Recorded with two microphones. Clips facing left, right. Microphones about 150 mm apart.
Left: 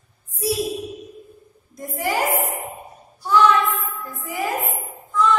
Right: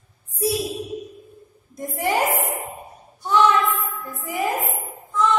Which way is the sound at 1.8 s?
20° right (ahead or behind).